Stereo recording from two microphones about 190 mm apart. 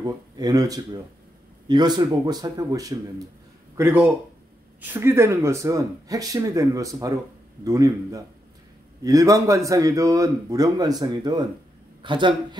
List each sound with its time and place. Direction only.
0.0 s a man's voice: 20° right (ahead or behind)